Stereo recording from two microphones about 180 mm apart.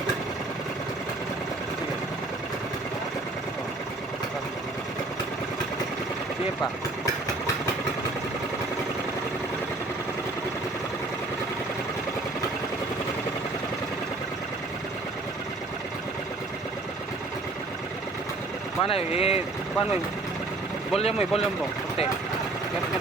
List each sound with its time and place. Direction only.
18.9 s speech: 35° left (ahead or behind)
20.9 s speech: 35° left (ahead or behind)